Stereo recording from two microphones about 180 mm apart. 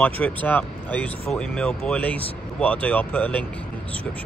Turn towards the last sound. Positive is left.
turn(degrees=10)  # may be behind; listen again after turning